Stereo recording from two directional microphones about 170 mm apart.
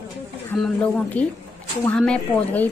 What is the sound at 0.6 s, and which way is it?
Speech, 5° left (ahead or behind).